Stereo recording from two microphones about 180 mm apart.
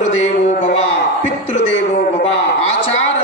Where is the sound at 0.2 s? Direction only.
40° left (ahead or behind).